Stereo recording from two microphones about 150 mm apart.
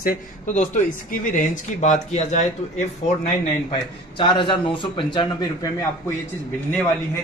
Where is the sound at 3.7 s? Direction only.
35° left (ahead or behind).